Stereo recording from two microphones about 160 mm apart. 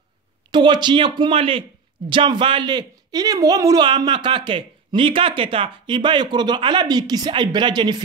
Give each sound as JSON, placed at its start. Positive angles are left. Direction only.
{"t": 0.5, "sound": "a woman's voice", "side_deg": -30}